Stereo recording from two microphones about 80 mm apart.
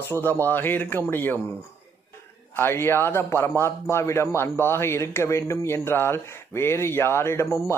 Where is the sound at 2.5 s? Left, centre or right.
Left.